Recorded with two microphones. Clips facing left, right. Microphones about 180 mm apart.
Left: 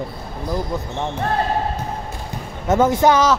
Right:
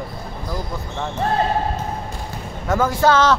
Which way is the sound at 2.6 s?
20° left (ahead or behind).